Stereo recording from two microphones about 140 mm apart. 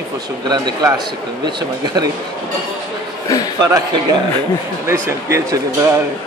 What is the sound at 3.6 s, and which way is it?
Speech, 25° right (ahead or behind).